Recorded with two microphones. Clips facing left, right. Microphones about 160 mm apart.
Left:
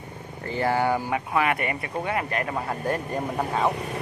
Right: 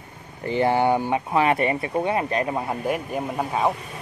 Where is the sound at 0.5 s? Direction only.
20° right (ahead or behind).